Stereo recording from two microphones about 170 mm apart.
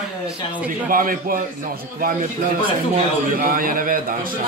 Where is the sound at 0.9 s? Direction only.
55° right (ahead or behind).